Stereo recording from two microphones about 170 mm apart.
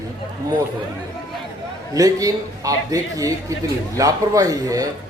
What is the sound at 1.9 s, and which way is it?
A man's voice, 20° right (ahead or behind).